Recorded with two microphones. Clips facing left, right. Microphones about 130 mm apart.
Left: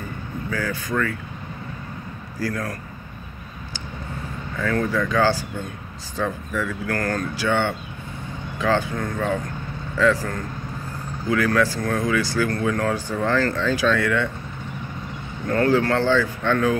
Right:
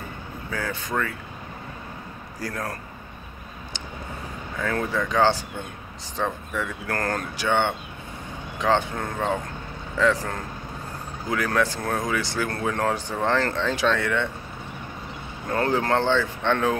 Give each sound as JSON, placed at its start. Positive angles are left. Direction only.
{"t": 0.5, "sound": "speech", "side_deg": -25}
{"t": 2.4, "sound": "speech", "side_deg": -25}
{"t": 4.6, "sound": "speech", "side_deg": -20}
{"t": 11.2, "sound": "speech", "side_deg": -20}
{"t": 15.5, "sound": "speech", "side_deg": -25}